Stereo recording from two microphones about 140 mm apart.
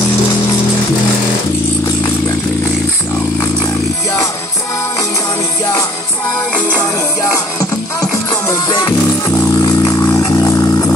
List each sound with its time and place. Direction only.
8.0 s music: 25° left (ahead or behind)
9.6 s vehicle: 25° left (ahead or behind)